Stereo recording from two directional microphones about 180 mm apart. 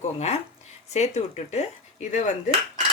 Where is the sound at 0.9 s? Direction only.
40° left (ahead or behind).